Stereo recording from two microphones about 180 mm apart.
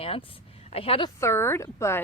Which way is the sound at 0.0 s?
30° left (ahead or behind).